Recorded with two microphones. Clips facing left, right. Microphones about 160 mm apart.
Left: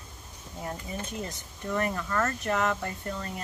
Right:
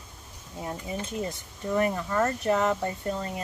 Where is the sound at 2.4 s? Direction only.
30° right (ahead or behind).